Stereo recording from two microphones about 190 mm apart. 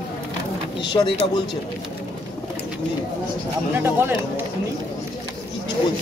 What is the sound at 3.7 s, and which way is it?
Speech, 10° right (ahead or behind).